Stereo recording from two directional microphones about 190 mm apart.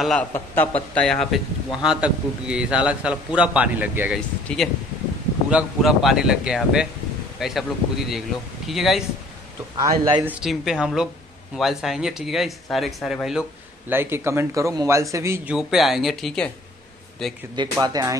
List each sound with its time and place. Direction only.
0.0 s a man's voice: 5° left (ahead or behind)
9.8 s speech: 20° right (ahead or behind)
10.2 s a man's voice: centre (ahead or behind)
15.5 s a man's voice: centre (ahead or behind)
17.6 s speech: 20° right (ahead or behind)